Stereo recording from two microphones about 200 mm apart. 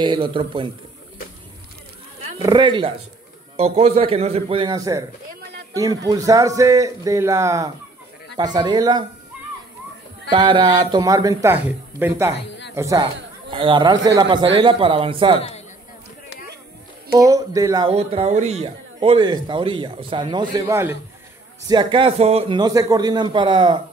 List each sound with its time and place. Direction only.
0.0 s speech: 25° right (ahead or behind)
2.4 s a man's voice: 20° right (ahead or behind)
10.3 s a man's voice: 25° right (ahead or behind)
17.1 s speech: 20° right (ahead or behind)
17.9 s speech: 30° right (ahead or behind)